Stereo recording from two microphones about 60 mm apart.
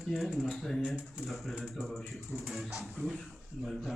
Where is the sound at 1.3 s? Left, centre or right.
Centre.